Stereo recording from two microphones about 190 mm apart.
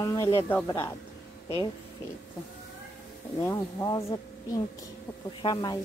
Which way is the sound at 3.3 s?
15° left (ahead or behind).